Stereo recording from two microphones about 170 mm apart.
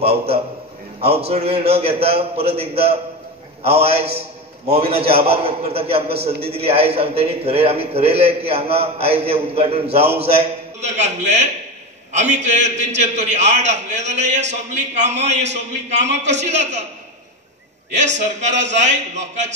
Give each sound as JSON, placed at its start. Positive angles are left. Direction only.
{"t": 0.0, "sound": "a man's voice", "side_deg": -35}
{"t": 17.9, "sound": "a man's voice", "side_deg": -45}